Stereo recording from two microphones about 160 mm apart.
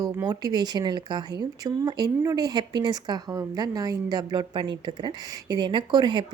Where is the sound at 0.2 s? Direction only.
25° right (ahead or behind).